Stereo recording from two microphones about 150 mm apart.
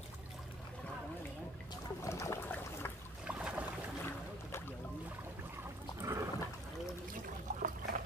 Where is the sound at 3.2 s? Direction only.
5° right (ahead or behind).